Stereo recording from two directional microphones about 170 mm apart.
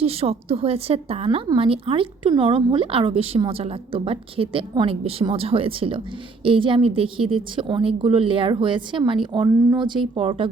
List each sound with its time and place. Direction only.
0.0 s a woman's voice: 35° right (ahead or behind)